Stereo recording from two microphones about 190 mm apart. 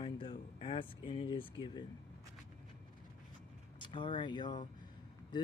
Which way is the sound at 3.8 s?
25° left (ahead or behind).